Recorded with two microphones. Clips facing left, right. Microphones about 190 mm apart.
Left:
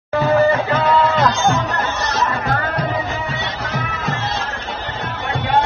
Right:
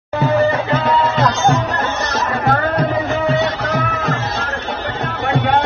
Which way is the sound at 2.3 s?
55° right (ahead or behind).